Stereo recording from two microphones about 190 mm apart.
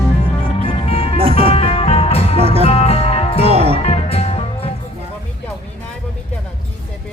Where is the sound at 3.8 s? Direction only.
35° left (ahead or behind).